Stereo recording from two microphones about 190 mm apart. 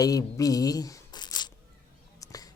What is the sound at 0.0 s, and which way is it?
A man's voice, 20° left (ahead or behind).